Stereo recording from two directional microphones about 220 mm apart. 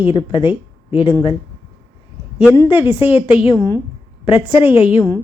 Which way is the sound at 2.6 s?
25° left (ahead or behind).